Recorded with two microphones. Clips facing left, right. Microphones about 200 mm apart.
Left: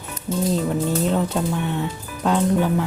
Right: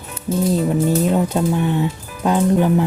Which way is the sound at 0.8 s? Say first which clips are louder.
Right 4 dB; 15° right (ahead or behind).